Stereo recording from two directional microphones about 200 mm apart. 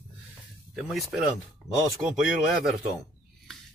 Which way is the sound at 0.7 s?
Centre (ahead or behind).